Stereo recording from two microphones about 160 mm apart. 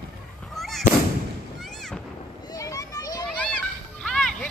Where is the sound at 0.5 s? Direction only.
Centre (ahead or behind).